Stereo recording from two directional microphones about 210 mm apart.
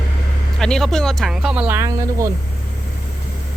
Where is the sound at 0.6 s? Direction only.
Centre (ahead or behind); by 2.3 s 15° right (ahead or behind).